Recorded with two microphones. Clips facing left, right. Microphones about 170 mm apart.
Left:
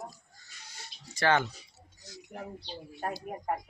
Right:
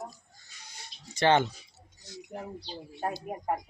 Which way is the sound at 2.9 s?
20° right (ahead or behind).